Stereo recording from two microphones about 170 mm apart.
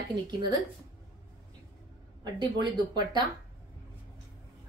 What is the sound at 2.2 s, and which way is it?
A woman's voice, 25° right (ahead or behind).